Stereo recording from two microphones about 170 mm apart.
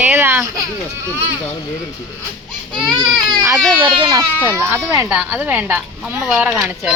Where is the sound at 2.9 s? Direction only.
25° right (ahead or behind).